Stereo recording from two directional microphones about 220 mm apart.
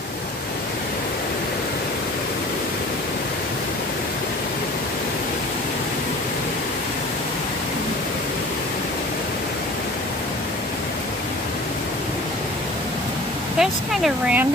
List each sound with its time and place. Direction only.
13.6 s speech: 5° right (ahead or behind)